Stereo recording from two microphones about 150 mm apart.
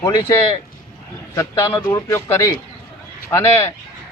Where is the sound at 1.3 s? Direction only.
20° left (ahead or behind).